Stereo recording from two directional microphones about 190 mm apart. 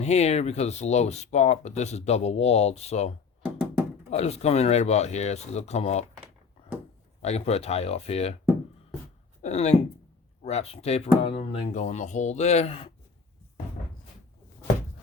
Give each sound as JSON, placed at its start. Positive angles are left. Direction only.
{"t": 0.0, "sound": "speech", "side_deg": 35}
{"t": 3.4, "sound": "a sound", "side_deg": -5}
{"t": 4.1, "sound": "speech", "side_deg": 35}
{"t": 7.2, "sound": "speech", "side_deg": 35}
{"t": 9.4, "sound": "speech", "side_deg": 35}